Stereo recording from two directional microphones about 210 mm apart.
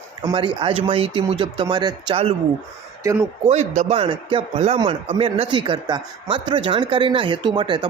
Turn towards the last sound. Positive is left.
turn(degrees=-20)  # may be behind; listen again after turning